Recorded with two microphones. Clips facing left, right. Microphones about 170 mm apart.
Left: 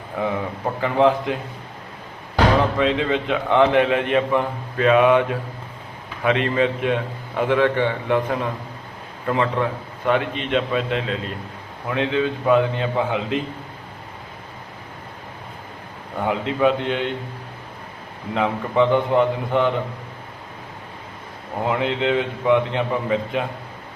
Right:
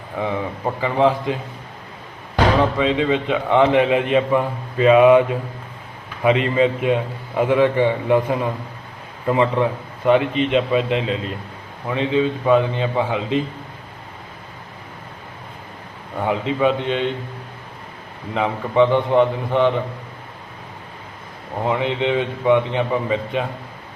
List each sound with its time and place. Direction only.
0.2 s a man's voice: centre (ahead or behind)
2.7 s a man's voice: centre (ahead or behind)
6.2 s a man's voice: 10° right (ahead or behind)
16.2 s a man's voice: centre (ahead or behind)
18.3 s a man's voice: centre (ahead or behind)
21.7 s a man's voice: centre (ahead or behind)